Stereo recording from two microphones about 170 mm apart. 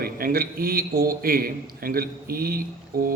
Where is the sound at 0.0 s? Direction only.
60° right (ahead or behind).